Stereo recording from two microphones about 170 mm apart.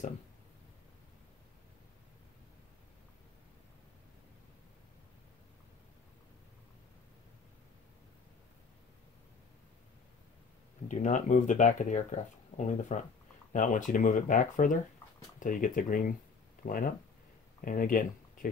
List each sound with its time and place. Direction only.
10.9 s speech: 50° left (ahead or behind)